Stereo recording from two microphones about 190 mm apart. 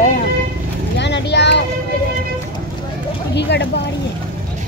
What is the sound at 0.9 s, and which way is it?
Vehicle, 65° left (ahead or behind).